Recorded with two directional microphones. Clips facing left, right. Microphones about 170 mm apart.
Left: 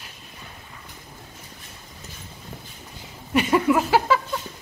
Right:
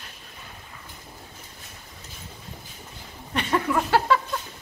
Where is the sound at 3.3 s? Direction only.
10° left (ahead or behind).